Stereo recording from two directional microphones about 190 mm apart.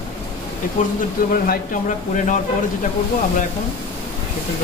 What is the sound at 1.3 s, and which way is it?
Speech, 45° left (ahead or behind).